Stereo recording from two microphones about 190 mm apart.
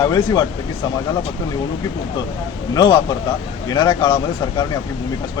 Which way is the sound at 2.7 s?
20° left (ahead or behind).